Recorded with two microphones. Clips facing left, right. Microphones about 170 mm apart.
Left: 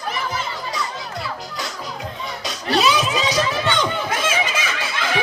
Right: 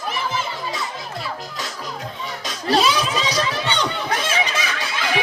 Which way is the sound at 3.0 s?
Centre (ahead or behind).